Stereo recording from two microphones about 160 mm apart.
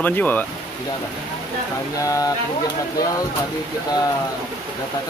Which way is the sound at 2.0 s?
20° left (ahead or behind).